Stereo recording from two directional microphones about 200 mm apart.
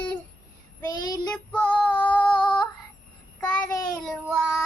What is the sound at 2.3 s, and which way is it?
Female singing, 20° left (ahead or behind).